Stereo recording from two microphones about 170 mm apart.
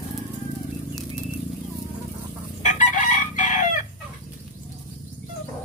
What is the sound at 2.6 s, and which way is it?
Chicken, 45° left (ahead or behind).